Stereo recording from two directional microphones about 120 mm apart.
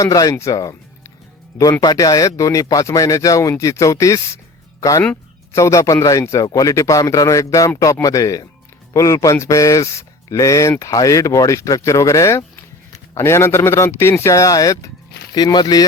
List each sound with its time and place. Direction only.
0.0 s speech: 30° left (ahead or behind)
1.8 s speech: 30° left (ahead or behind)